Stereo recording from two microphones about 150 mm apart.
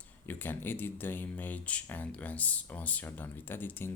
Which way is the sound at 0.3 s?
15° left (ahead or behind).